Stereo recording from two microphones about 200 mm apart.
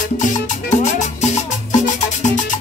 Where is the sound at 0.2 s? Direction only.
35° left (ahead or behind).